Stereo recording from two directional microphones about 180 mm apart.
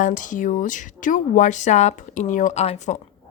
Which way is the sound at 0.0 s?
45° left (ahead or behind).